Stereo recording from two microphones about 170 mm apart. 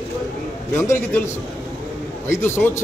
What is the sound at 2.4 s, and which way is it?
Speech, 15° left (ahead or behind).